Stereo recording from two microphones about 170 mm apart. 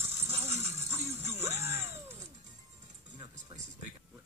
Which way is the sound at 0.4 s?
40° right (ahead or behind).